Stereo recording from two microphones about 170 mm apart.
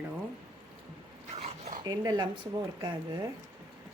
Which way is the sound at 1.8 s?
25° right (ahead or behind).